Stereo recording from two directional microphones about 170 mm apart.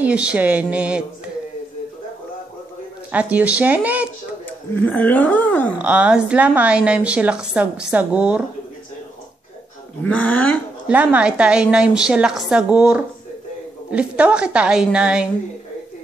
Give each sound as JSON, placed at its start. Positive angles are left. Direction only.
{"t": 0.0, "sound": "a woman's voice", "side_deg": -5}
{"t": 3.1, "sound": "a woman's voice", "side_deg": -10}
{"t": 4.5, "sound": "speech", "side_deg": 10}
{"t": 5.8, "sound": "a woman's voice", "side_deg": -5}
{"t": 10.0, "sound": "speech", "side_deg": 10}
{"t": 10.9, "sound": "a woman's voice", "side_deg": -10}